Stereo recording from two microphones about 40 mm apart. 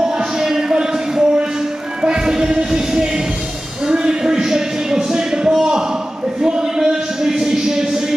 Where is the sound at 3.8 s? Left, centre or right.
Right.